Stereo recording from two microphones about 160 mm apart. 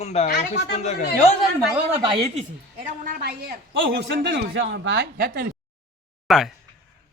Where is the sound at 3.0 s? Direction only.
70° right (ahead or behind).